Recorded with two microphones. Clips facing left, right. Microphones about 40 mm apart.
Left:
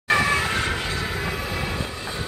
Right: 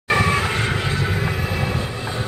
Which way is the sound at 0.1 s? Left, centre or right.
Centre.